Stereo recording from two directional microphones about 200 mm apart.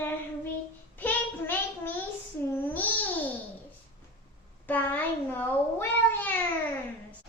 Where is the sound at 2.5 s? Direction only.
10° left (ahead or behind).